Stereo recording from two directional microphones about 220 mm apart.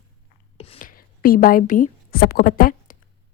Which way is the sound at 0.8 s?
40° left (ahead or behind).